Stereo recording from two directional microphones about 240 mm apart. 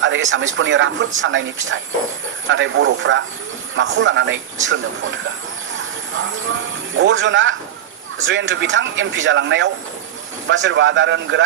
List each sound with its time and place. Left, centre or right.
0.0 s speech: right
6.9 s speech: right